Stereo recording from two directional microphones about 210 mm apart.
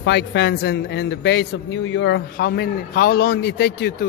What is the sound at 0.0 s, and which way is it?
A man's voice, 55° left (ahead or behind).